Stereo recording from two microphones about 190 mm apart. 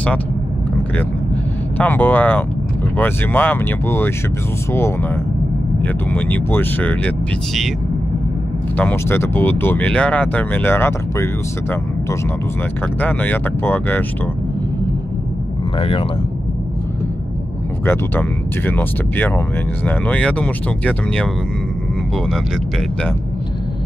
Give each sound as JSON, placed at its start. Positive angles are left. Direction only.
{"t": 1.8, "sound": "speech", "side_deg": 10}
{"t": 8.7, "sound": "speech", "side_deg": 10}
{"t": 12.8, "sound": "speech", "side_deg": 10}
{"t": 15.8, "sound": "speech", "side_deg": 30}
{"t": 17.8, "sound": "speech", "side_deg": 10}